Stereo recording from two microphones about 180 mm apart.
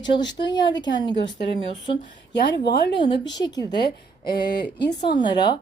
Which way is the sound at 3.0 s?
25° left (ahead or behind).